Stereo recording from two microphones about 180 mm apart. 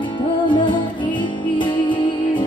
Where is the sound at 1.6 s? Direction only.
25° left (ahead or behind).